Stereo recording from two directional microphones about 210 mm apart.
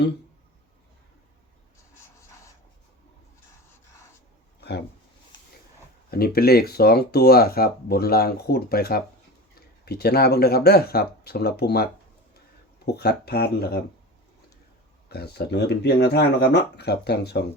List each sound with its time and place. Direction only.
6.1 s speech: 45° left (ahead or behind)
15.1 s speech: 50° left (ahead or behind)